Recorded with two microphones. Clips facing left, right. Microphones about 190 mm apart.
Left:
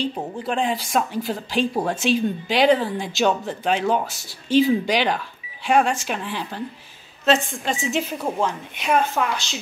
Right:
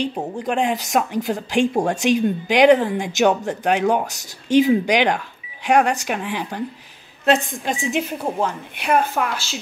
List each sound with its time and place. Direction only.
0.0 s a woman's voice: 15° right (ahead or behind)
7.8 s a woman's voice: 10° right (ahead or behind)